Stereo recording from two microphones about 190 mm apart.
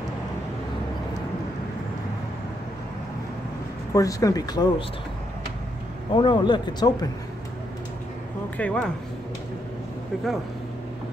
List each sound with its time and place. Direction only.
3.9 s speech: 15° left (ahead or behind)
6.1 s speech: 25° left (ahead or behind)
8.5 s speech: 5° left (ahead or behind)
10.1 s speech: centre (ahead or behind)